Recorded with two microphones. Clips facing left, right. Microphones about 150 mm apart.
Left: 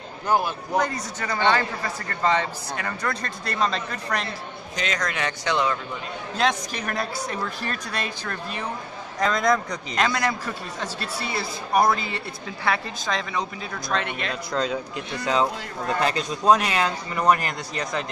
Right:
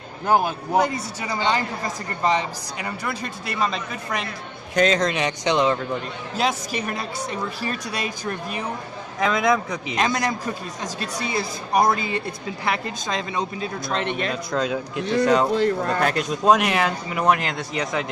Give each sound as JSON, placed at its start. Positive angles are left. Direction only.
{"t": 0.3, "sound": "a man's voice", "side_deg": -50}
{"t": 0.7, "sound": "a woman's voice", "side_deg": -10}
{"t": 4.8, "sound": "a man's voice", "side_deg": -25}
{"t": 6.3, "sound": "a woman's voice", "side_deg": -5}
{"t": 9.9, "sound": "a man's voice", "side_deg": -20}
{"t": 14.5, "sound": "speech", "side_deg": 0}